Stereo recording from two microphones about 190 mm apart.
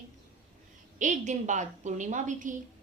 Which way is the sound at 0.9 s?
40° right (ahead or behind).